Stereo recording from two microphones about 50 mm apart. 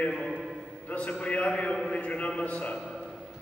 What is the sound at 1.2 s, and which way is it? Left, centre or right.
A man's voice, left.